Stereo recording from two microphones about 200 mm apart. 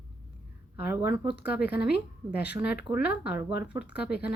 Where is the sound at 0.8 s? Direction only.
10° right (ahead or behind).